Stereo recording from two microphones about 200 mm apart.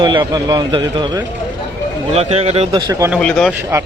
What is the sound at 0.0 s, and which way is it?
A man's voice, 20° right (ahead or behind).